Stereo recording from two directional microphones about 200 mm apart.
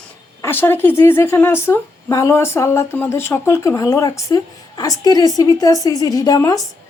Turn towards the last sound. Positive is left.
turn(degrees=15)  # may be behind; listen again after turning